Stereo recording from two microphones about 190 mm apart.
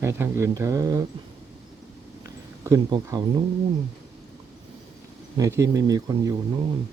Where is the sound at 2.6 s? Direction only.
15° right (ahead or behind).